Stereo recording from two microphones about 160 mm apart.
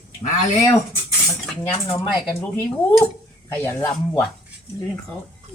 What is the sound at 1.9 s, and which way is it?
Dishes, 15° left (ahead or behind).